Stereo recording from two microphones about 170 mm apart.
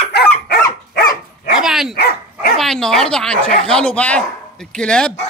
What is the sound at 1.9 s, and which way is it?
Dog, 70° left (ahead or behind).